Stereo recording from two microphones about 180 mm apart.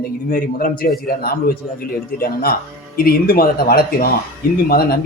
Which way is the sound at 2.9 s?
55° left (ahead or behind).